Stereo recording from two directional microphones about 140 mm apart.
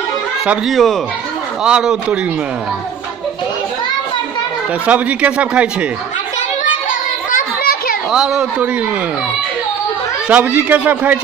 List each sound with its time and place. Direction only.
0.5 s a man's voice: centre (ahead or behind)
4.8 s speech: 10° right (ahead or behind)
7.2 s children playing: 85° left
8.1 s a man's voice: 5° right (ahead or behind)
10.2 s speech: 10° right (ahead or behind)